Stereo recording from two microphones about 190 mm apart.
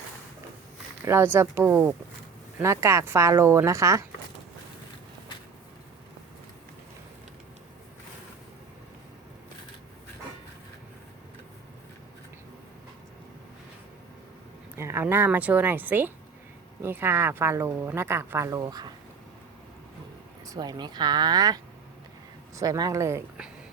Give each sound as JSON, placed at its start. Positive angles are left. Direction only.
{"t": 1.0, "sound": "speech", "side_deg": -10}
{"t": 14.8, "sound": "speech", "side_deg": -15}
{"t": 20.5, "sound": "speech", "side_deg": -20}